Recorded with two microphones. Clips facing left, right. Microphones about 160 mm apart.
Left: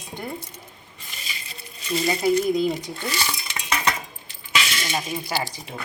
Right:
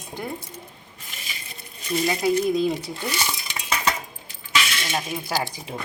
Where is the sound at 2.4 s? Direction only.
Centre (ahead or behind).